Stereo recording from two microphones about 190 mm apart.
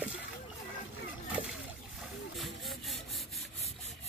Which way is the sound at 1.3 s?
Centre (ahead or behind).